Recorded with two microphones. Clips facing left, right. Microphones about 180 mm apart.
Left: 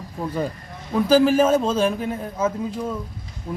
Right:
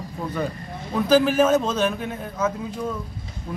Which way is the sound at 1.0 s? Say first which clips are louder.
Left 1 dB; 30° left (ahead or behind).